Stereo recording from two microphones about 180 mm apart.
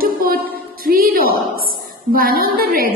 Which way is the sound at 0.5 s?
55° right (ahead or behind).